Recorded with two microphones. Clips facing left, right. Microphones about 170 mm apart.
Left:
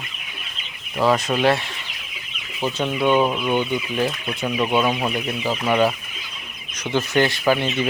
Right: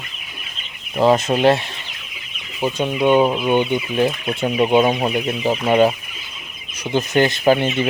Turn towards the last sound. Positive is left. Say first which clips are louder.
# right 3 dB
turn(degrees=-25)  # may be behind; listen again after turning